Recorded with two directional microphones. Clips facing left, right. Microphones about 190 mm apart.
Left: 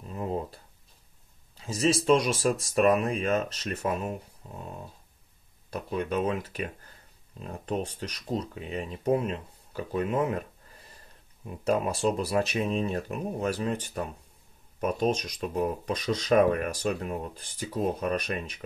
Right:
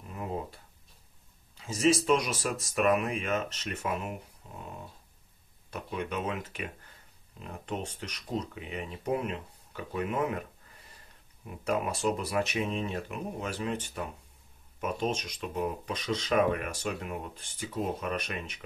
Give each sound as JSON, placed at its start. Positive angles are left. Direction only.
{"t": 0.1, "sound": "a sound", "side_deg": 30}
{"t": 1.7, "sound": "speech", "side_deg": 35}
{"t": 5.7, "sound": "speech", "side_deg": 35}
{"t": 11.4, "sound": "speech", "side_deg": 30}